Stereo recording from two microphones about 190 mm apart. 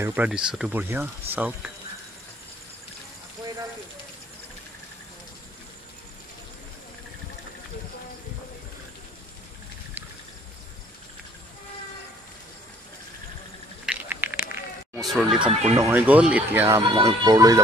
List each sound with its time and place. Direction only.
0.0 s speech: 10° right (ahead or behind)
13.8 s a sound: 10° right (ahead or behind)
15.0 s chatter: centre (ahead or behind)
15.4 s speech: 35° right (ahead or behind)
15.8 s speech: 10° right (ahead or behind)
16.8 s speech: 25° right (ahead or behind)